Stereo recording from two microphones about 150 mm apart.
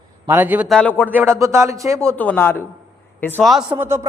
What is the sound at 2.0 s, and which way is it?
Speech, 10° left (ahead or behind).